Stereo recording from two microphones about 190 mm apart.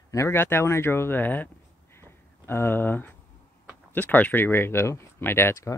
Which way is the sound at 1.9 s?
10° left (ahead or behind).